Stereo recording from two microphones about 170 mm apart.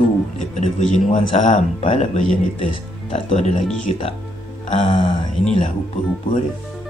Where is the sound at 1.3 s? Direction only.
45° left (ahead or behind).